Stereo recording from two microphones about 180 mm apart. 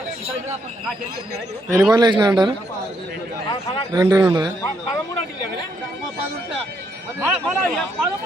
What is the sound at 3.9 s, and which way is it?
Speech, 15° right (ahead or behind).